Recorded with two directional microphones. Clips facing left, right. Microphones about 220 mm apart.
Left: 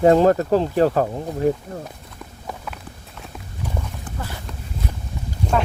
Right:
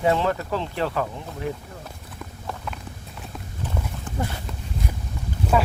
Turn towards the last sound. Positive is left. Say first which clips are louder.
# even
turn(degrees=-5)  # may be behind; listen again after turning